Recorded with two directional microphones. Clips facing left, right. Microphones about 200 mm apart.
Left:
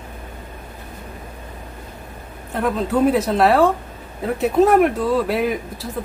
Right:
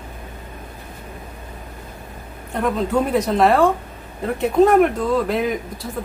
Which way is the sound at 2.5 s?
Centre (ahead or behind).